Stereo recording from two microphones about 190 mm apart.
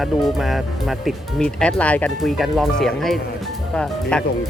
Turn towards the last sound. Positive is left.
turn(degrees=5)  # may be behind; listen again after turning